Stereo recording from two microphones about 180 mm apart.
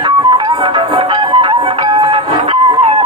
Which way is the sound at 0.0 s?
25° right (ahead or behind).